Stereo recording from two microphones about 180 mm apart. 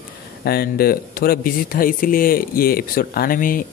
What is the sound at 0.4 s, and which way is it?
Speech, 60° left (ahead or behind).